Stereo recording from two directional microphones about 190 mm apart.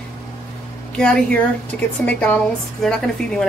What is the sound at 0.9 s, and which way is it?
A woman's voice, 5° left (ahead or behind).